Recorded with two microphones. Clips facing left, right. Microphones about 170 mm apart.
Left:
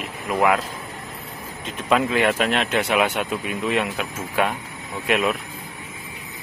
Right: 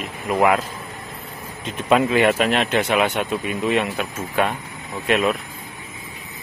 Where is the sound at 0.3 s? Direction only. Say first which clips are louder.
Right 2 dB; centre (ahead or behind).